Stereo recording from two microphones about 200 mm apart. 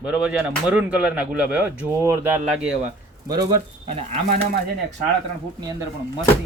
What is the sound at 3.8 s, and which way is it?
Speech, 30° right (ahead or behind).